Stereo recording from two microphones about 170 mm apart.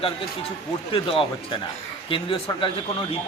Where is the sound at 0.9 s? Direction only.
30° left (ahead or behind).